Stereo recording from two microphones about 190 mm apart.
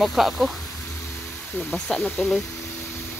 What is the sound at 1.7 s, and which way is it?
Speech, 5° left (ahead or behind).